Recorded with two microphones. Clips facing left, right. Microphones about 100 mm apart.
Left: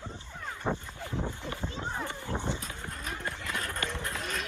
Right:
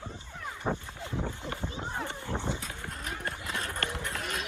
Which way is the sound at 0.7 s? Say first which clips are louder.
Even; 5° right (ahead or behind).